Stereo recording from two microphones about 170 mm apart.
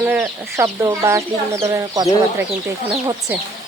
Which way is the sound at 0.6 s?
20° right (ahead or behind).